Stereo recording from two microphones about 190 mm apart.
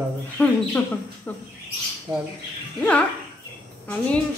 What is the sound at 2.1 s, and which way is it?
Speech, 15° right (ahead or behind).